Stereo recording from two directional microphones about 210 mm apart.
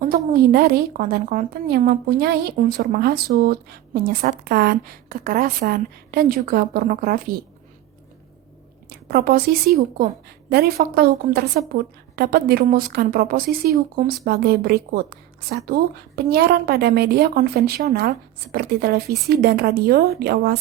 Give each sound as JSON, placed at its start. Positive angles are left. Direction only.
{"t": 0.3, "sound": "a woman's voice", "side_deg": -50}
{"t": 8.9, "sound": "a woman's voice", "side_deg": -45}